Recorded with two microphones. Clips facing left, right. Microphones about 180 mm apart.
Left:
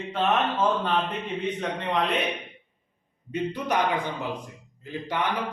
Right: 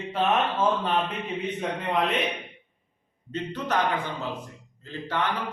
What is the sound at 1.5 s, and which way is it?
Speech, 5° right (ahead or behind).